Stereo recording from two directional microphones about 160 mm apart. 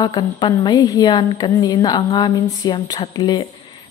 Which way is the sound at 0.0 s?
30° left (ahead or behind).